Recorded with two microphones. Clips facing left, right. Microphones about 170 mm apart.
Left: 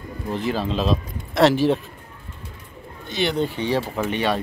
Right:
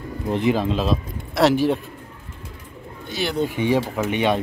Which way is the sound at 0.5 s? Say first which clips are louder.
Right 2 dB; 15° right (ahead or behind).